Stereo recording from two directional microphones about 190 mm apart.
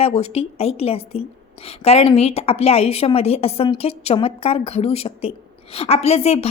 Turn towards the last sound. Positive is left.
turn(degrees=35)  # may be behind; listen again after turning